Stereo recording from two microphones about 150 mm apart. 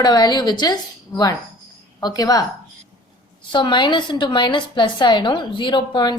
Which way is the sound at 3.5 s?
30° left (ahead or behind).